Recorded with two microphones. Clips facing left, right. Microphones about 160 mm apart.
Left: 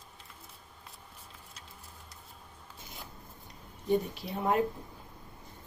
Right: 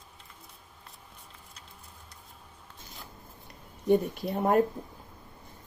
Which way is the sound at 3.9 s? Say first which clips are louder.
Right 5 dB; 50° right (ahead or behind).